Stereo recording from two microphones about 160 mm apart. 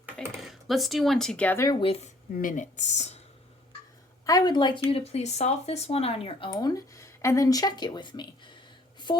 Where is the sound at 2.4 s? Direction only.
55° left (ahead or behind).